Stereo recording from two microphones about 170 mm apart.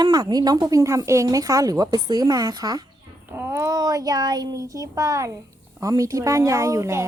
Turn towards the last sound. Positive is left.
turn(degrees=-15)  # may be behind; listen again after turning